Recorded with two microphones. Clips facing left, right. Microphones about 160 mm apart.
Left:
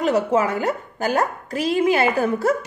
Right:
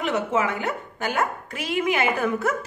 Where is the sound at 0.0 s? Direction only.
40° left (ahead or behind).